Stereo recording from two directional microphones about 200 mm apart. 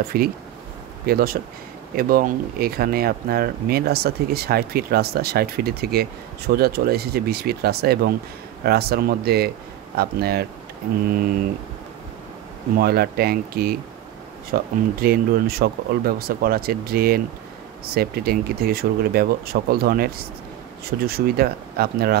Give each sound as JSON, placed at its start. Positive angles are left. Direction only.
{"t": 0.1, "sound": "speech", "side_deg": -45}
{"t": 12.7, "sound": "speech", "side_deg": -50}